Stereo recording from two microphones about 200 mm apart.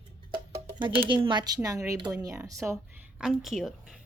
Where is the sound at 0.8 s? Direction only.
25° right (ahead or behind).